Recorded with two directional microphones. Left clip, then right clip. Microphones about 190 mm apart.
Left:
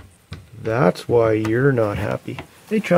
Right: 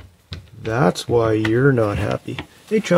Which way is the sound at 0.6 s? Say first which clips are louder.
Left 1 dB; 10° left (ahead or behind).